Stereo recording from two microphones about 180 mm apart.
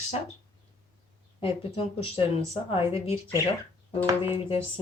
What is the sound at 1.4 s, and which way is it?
Speech, 30° left (ahead or behind).